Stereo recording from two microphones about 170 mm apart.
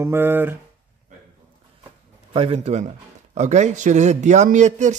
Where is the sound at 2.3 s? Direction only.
35° right (ahead or behind).